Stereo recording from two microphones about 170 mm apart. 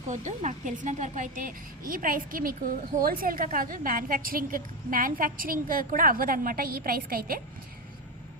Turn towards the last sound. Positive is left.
turn(degrees=-60)  # may be behind; listen again after turning